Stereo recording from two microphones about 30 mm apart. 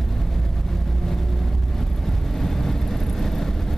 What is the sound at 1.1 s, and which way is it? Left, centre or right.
Vehicle, centre.